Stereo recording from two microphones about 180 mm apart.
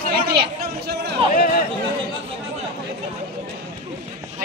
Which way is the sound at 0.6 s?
65° right (ahead or behind).